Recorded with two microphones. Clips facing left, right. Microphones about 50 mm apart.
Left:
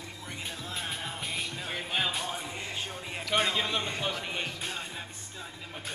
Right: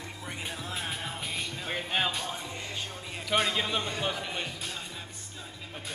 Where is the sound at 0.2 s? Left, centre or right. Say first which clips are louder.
Right 2 dB; centre.